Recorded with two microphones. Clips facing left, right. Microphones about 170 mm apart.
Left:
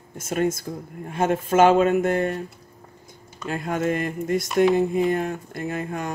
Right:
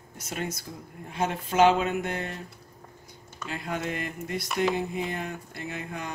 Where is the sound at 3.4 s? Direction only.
50° left (ahead or behind).